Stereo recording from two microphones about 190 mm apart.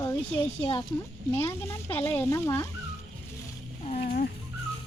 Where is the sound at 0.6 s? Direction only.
30° left (ahead or behind).